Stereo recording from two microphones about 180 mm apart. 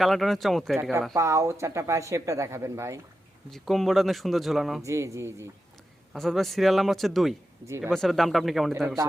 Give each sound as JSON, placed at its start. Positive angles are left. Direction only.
{"t": 0.0, "sound": "speech", "side_deg": 0}
{"t": 0.8, "sound": "speech", "side_deg": -10}
{"t": 3.5, "sound": "speech", "side_deg": 0}
{"t": 4.8, "sound": "speech", "side_deg": -15}
{"t": 6.1, "sound": "speech", "side_deg": 0}